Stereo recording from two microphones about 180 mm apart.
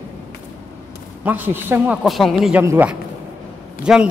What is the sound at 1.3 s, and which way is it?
A man's voice, 10° right (ahead or behind).